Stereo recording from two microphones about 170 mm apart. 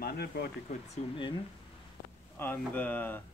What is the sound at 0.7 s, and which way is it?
Speech, 40° left (ahead or behind).